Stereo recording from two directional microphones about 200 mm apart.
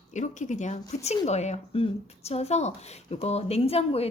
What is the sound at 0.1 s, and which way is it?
A woman's voice, 40° left (ahead or behind).